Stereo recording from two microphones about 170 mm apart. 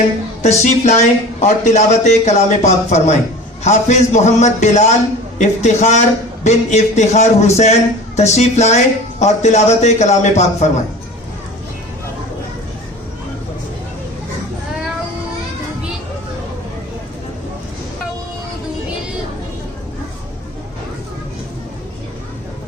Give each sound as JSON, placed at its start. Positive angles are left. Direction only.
{"t": 0.4, "sound": "a man's voice", "side_deg": 40}